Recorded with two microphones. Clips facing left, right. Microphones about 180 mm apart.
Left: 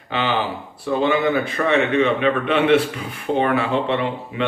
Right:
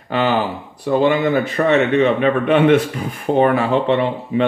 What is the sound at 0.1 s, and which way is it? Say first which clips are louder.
Speech: right 4 dB; 45° right (ahead or behind).